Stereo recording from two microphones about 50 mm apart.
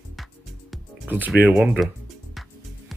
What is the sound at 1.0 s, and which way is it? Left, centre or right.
Speech, right.